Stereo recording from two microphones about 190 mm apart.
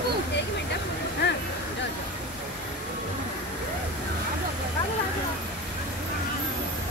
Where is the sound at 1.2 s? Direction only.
65° left (ahead or behind).